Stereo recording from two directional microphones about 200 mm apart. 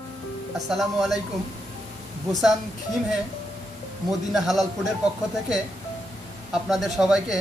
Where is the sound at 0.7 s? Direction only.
Centre (ahead or behind).